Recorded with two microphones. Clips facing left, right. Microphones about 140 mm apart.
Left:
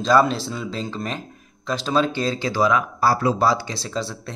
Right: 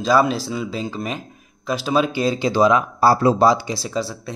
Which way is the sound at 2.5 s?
20° right (ahead or behind).